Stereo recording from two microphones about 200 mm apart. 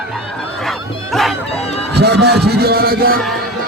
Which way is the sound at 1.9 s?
55° right (ahead or behind).